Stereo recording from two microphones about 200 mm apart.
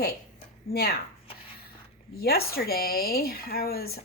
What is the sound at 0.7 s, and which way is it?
Speech, 50° left (ahead or behind).